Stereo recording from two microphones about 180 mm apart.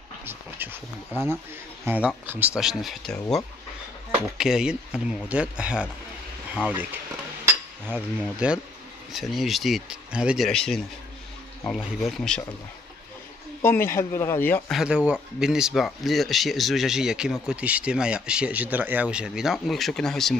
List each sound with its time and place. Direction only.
0.2 s speech: 10° right (ahead or behind)
1.9 s speech: 10° right (ahead or behind)
6.7 s a sound: 10° right (ahead or behind)
9.1 s speech: centre (ahead or behind)
13.6 s speech: 10° left (ahead or behind)
14.7 s speech: 5° right (ahead or behind)